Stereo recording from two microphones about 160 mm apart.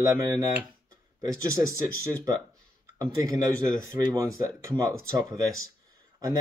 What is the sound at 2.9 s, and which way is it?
Speech, 25° right (ahead or behind).